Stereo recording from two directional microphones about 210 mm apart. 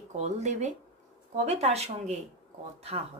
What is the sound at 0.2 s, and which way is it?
Speech, 30° right (ahead or behind).